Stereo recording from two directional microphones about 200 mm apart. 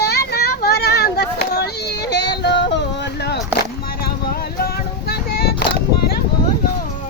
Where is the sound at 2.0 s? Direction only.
60° left (ahead or behind).